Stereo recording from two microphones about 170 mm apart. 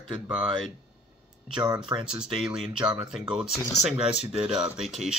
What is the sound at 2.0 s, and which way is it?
Speech, 5° right (ahead or behind).